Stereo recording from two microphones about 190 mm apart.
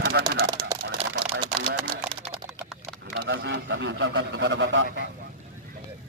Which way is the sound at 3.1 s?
65° right (ahead or behind).